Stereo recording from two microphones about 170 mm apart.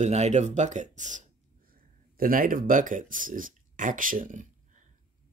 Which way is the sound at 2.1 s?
55° right (ahead or behind).